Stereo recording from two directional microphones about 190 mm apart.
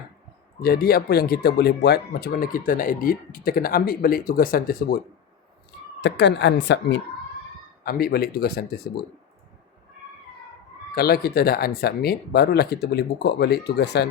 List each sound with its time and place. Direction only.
0.6 s speech: 55° left (ahead or behind)
6.0 s speech: 65° left (ahead or behind)
7.9 s speech: 55° left (ahead or behind)
10.9 s speech: 55° left (ahead or behind)